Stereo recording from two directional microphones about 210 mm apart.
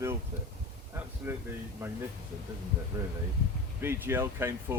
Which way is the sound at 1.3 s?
10° right (ahead or behind).